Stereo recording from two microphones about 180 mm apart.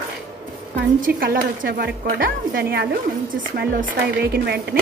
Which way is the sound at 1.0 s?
55° right (ahead or behind).